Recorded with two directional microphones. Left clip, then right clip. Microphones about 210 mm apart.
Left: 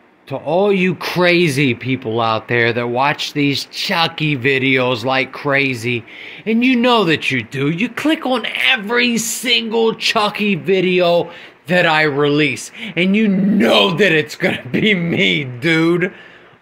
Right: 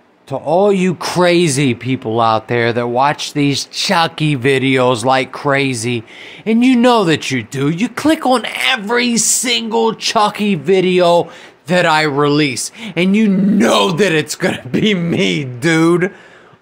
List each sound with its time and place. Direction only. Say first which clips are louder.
0.3 s a man's voice: right 3 dB; 10° right (ahead or behind)